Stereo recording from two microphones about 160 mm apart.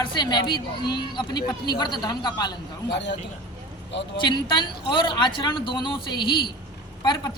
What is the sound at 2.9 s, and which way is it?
Speech, 90° left.